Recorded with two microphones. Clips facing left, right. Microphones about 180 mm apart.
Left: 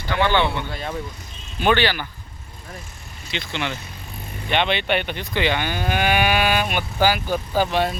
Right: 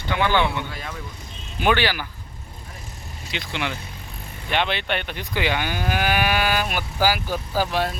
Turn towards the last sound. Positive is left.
turn(degrees=0)  # may be behind; listen again after turning